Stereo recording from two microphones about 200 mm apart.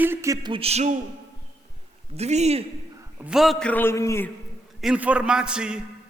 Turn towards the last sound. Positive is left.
turn(degrees=-5)  # may be behind; listen again after turning